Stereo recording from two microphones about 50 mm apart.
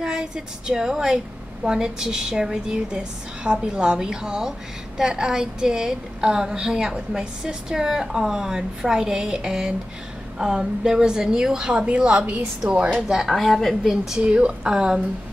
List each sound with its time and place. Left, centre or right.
0.0 s a woman's voice: centre
12.7 s a woman's voice: right
13.3 s a woman's voice: centre
14.2 s speech: right